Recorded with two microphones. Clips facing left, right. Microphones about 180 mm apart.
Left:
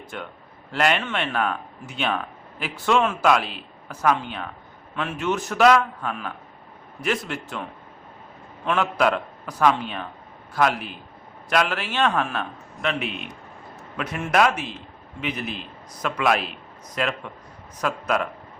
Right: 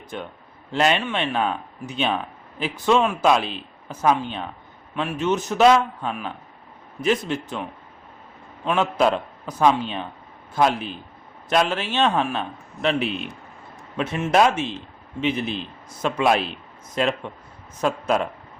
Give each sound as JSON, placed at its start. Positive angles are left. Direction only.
{"t": 0.7, "sound": "speech", "side_deg": -20}
{"t": 12.8, "sound": "a man's voice", "side_deg": -35}